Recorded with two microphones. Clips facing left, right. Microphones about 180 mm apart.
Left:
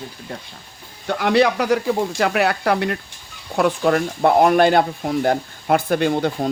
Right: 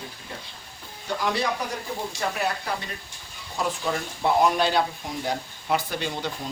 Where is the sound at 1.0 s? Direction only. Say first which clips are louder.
Left 10 dB; 70° left (ahead or behind); by 6.5 s 55° left (ahead or behind).